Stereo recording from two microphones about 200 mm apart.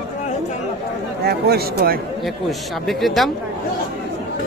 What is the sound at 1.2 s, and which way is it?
Speech, 55° right (ahead or behind).